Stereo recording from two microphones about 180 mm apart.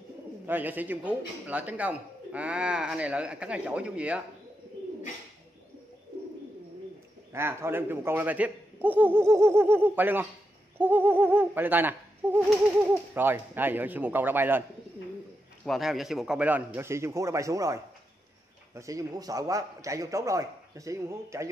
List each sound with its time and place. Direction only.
0.5 s a man's voice: 10° right (ahead or behind)
7.3 s a man's voice: 15° right (ahead or behind)
15.6 s a man's voice: centre (ahead or behind); by 17.7 s 20° right (ahead or behind)
18.8 s a man's voice: 20° right (ahead or behind)